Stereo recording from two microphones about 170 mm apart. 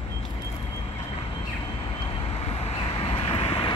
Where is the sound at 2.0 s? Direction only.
35° left (ahead or behind).